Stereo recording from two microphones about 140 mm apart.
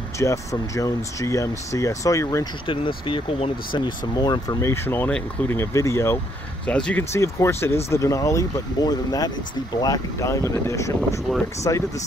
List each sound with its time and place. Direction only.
0.2 s speech: 20° left (ahead or behind)
2.6 s speech: 40° left (ahead or behind); by 6.1 s 20° left (ahead or behind)
6.6 s speech: 10° left (ahead or behind)
7.1 s speech: 20° left (ahead or behind)